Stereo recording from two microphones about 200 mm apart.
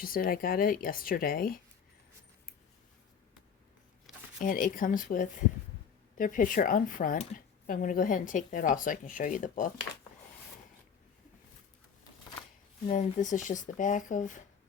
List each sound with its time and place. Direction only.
0.0 s speech: 45° left (ahead or behind)
4.4 s speech: 40° left (ahead or behind)
12.8 s speech: 35° left (ahead or behind)